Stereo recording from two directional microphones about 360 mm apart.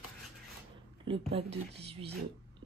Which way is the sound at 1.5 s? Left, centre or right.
Right.